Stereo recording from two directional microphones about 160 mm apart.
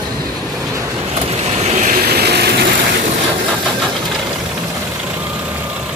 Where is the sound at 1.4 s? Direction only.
40° right (ahead or behind); by 2.6 s 90° right.